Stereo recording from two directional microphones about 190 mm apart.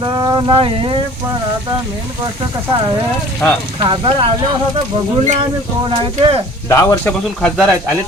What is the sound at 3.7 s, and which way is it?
Speech, 25° right (ahead or behind).